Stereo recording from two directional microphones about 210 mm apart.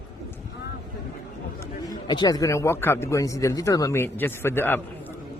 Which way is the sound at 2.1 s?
20° left (ahead or behind).